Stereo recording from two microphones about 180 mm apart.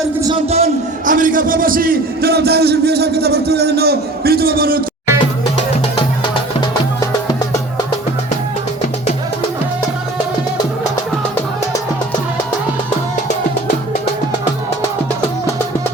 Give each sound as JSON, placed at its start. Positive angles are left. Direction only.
{"t": 0.2, "sound": "a man's voice", "side_deg": -25}